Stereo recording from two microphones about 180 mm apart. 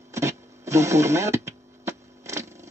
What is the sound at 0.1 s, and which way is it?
Radio, 15° right (ahead or behind).